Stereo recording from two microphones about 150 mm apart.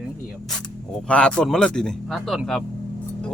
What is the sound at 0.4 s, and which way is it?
Speech, 5° left (ahead or behind).